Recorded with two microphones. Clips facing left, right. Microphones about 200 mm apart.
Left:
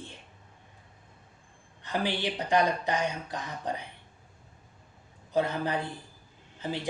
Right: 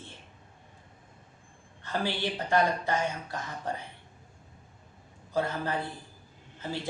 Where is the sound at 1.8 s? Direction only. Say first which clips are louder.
Left 1 dB; 15° left (ahead or behind).